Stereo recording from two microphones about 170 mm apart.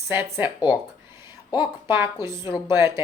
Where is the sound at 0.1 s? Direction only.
10° right (ahead or behind).